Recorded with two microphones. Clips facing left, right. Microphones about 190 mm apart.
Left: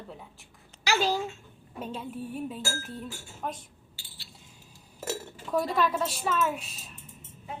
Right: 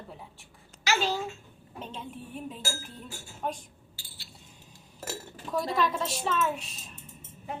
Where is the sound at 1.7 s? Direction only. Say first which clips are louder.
Left 4 dB; 5° left (ahead or behind).